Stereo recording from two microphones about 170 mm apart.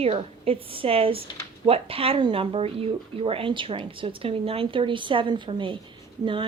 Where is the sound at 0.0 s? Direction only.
35° right (ahead or behind).